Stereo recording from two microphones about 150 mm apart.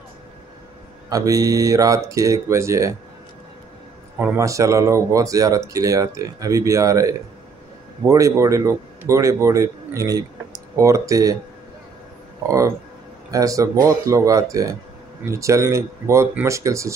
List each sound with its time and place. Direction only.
1.0 s speech: 25° right (ahead or behind)
4.2 s a man's voice: 15° right (ahead or behind)
12.4 s speech: 20° right (ahead or behind)